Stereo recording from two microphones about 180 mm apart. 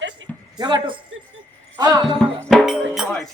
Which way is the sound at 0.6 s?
25° right (ahead or behind).